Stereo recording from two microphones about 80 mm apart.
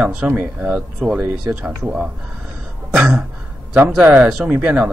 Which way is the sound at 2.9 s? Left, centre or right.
Centre.